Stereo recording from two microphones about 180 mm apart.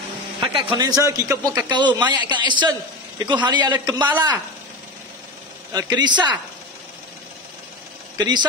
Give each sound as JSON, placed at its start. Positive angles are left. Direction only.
{"t": 0.4, "sound": "speech", "side_deg": -25}
{"t": 5.7, "sound": "speech", "side_deg": -20}
{"t": 8.2, "sound": "speech", "side_deg": -25}